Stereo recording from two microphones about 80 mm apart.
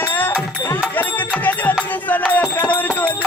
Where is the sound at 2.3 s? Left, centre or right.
Left.